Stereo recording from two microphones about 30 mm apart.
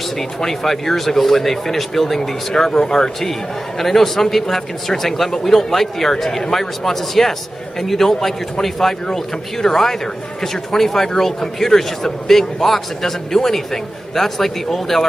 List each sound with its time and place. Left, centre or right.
0.4 s a man's voice: centre
2.5 s a man's voice: centre